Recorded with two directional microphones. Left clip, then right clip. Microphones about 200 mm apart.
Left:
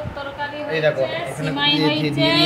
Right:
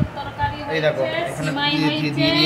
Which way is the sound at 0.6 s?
5° left (ahead or behind).